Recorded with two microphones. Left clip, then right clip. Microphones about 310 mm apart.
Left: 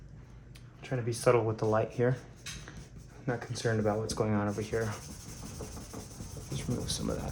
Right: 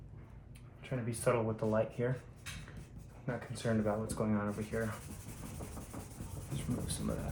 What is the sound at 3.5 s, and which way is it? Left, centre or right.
Speech, left.